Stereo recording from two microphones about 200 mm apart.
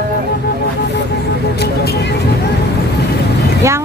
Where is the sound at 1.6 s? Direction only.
55° left (ahead or behind).